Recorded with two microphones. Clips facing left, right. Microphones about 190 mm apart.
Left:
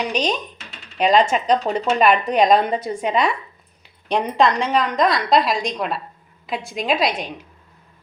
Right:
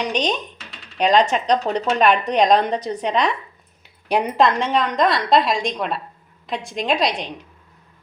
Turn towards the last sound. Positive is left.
turn(degrees=5)  # may be behind; listen again after turning